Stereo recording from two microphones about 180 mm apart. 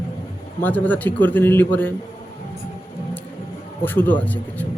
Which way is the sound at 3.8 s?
10° left (ahead or behind).